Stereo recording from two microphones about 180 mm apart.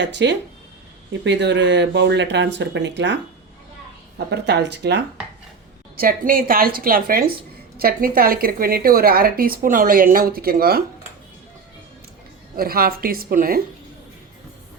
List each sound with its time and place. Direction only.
0.0 s speech: 75° right (ahead or behind)
4.3 s speech: 75° right (ahead or behind)
6.0 s a woman's voice: 55° right (ahead or behind)
12.5 s a woman's voice: 55° right (ahead or behind)